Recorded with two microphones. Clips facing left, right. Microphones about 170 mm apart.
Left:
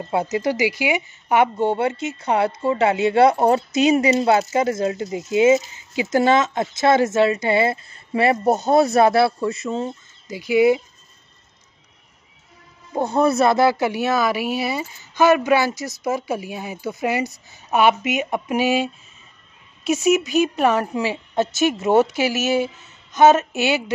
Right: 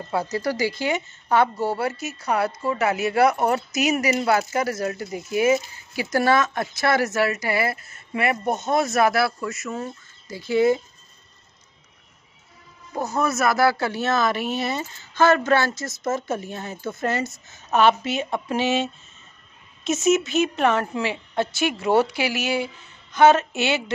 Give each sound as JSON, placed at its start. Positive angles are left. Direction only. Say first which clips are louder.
{"t": 0.1, "sound": "speech", "louder": "left 3 dB", "side_deg": 20}
{"t": 12.9, "sound": "speech", "louder": "left 6 dB", "side_deg": 30}